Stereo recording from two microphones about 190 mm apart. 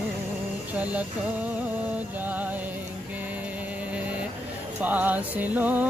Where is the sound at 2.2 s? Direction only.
10° right (ahead or behind).